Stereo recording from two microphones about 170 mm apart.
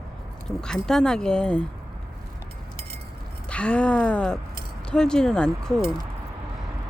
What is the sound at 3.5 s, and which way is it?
Speech, 5° left (ahead or behind).